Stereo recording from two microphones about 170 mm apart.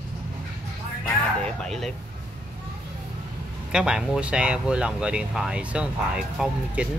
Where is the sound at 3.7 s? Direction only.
5° right (ahead or behind).